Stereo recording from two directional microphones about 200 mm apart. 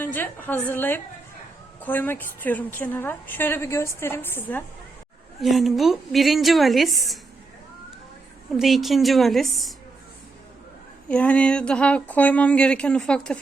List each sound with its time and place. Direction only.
0.0 s a woman's voice: 10° left (ahead or behind)
8.5 s speech: centre (ahead or behind)
11.1 s speech: 5° left (ahead or behind)